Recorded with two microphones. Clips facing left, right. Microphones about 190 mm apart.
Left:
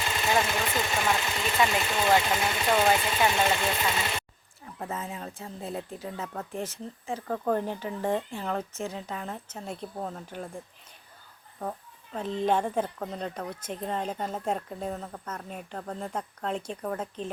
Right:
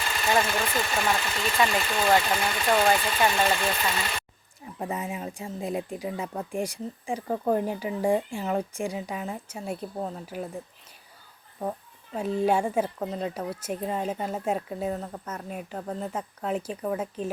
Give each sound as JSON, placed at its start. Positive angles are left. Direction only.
{"t": 0.0, "sound": "vehicle", "side_deg": 20}
{"t": 0.7, "sound": "speech", "side_deg": 20}
{"t": 0.9, "sound": "speech", "side_deg": 0}
{"t": 1.2, "sound": "speech", "side_deg": 20}
{"t": 1.5, "sound": "speech", "side_deg": 0}
{"t": 1.8, "sound": "speech", "side_deg": 20}
{"t": 2.0, "sound": "speech", "side_deg": 0}
{"t": 2.4, "sound": "speech", "side_deg": 20}
{"t": 2.6, "sound": "speech", "side_deg": 5}
{"t": 4.8, "sound": "speech", "side_deg": -15}
{"t": 11.6, "sound": "speech", "side_deg": -10}